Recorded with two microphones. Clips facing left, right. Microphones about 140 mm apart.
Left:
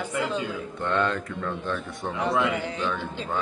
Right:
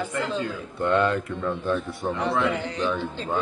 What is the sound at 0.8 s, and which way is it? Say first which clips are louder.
A man's voice: right 4 dB; 10° right (ahead or behind).